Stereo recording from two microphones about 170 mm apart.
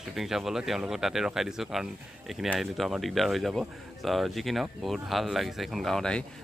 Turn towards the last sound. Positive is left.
turn(degrees=5)  # may be behind; listen again after turning